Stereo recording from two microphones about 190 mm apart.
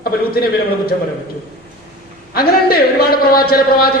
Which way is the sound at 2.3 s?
50° left (ahead or behind).